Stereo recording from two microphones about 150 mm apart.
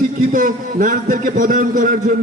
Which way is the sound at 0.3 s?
65° right (ahead or behind).